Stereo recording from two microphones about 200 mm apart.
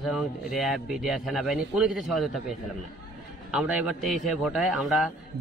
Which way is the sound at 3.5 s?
5° right (ahead or behind).